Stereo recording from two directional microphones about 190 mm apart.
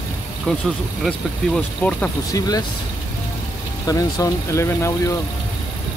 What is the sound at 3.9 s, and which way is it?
Speech, 20° left (ahead or behind).